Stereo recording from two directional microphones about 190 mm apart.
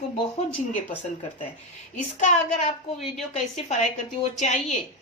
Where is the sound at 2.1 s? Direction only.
40° left (ahead or behind).